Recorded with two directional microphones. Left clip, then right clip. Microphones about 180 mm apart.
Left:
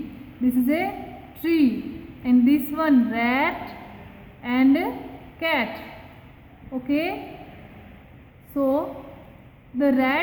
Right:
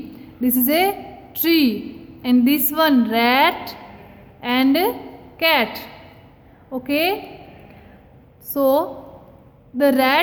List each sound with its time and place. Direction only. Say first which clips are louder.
0.7 s a woman's voice: right 7 dB; 60° right (ahead or behind)
6.8 s a woman's voice: right 6 dB; 55° right (ahead or behind)
8.5 s a woman's voice: right 6 dB; 55° right (ahead or behind)